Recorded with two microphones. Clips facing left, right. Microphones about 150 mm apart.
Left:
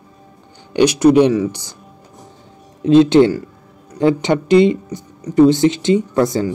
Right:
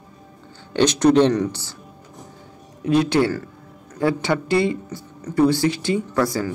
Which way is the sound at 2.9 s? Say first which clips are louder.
Left 8 dB; 20° left (ahead or behind).